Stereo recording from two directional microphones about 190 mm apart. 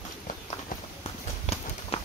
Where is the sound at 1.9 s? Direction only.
35° left (ahead or behind).